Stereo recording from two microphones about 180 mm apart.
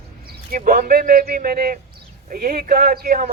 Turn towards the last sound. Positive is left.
turn(degrees=-55)  # may be behind; listen again after turning